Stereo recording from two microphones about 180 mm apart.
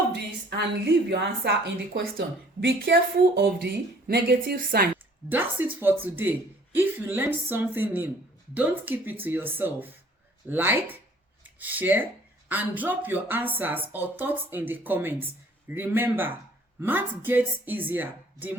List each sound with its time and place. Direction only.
0.5 s a woman's voice: 70° right (ahead or behind)
2.6 s speech: 60° right (ahead or behind)
5.3 s a woman's voice: 10° right (ahead or behind)